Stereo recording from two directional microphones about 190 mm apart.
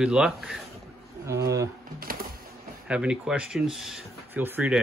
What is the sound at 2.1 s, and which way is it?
Printer, 50° right (ahead or behind).